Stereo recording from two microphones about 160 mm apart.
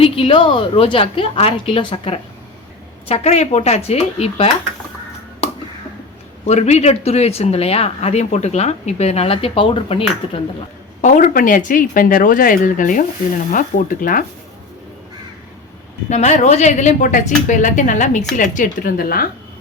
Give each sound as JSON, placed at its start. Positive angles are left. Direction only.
{"t": 0.0, "sound": "a woman's voice", "side_deg": 35}
{"t": 6.4, "sound": "speech", "side_deg": 45}
{"t": 11.0, "sound": "speech", "side_deg": 55}
{"t": 16.0, "sound": "a woman's voice", "side_deg": 45}